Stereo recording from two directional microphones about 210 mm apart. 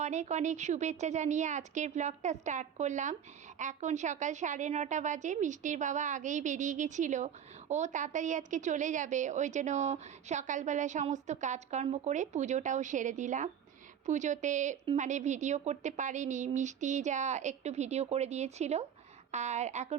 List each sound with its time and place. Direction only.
0.0 s a woman's voice: 35° right (ahead or behind)